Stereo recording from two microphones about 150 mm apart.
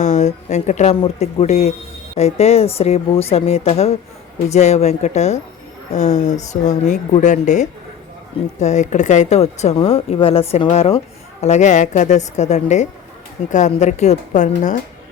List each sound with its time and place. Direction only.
0.0 s speech: 50° left (ahead or behind)